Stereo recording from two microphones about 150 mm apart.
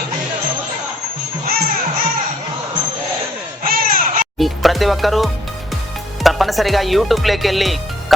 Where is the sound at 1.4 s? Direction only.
85° right.